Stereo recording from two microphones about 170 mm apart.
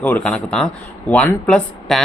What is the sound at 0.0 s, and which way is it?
Speech, 5° left (ahead or behind).